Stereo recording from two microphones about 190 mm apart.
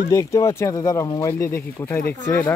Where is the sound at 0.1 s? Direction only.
15° left (ahead or behind).